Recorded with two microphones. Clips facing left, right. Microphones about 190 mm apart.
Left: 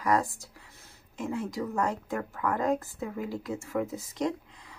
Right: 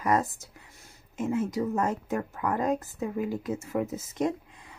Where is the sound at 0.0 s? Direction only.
20° right (ahead or behind).